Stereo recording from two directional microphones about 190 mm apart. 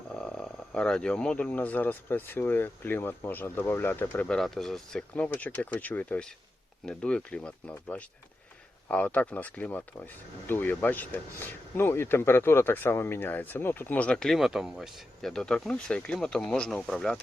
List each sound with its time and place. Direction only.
0.1 s speech: 5° left (ahead or behind)